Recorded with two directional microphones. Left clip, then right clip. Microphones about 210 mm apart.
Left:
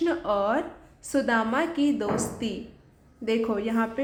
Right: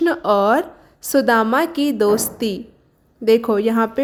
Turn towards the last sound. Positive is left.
turn(degrees=-45)  # may be behind; listen again after turning